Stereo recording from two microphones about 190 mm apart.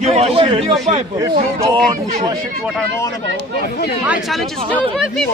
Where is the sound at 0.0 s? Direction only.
35° right (ahead or behind).